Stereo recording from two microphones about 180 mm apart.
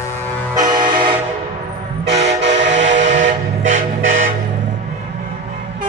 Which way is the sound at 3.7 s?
45° right (ahead or behind).